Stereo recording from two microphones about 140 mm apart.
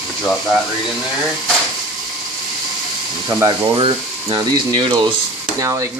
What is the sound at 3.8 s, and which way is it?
Speech, 35° right (ahead or behind).